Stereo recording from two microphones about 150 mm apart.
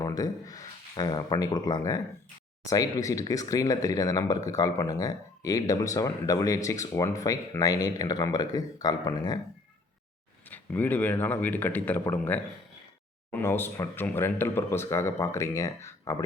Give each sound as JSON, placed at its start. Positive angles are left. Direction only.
{"t": 0.0, "sound": "speech", "side_deg": 25}
{"t": 10.5, "sound": "speech", "side_deg": 10}